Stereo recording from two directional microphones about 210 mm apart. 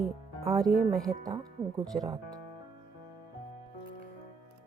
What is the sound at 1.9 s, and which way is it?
Speech, 35° right (ahead or behind).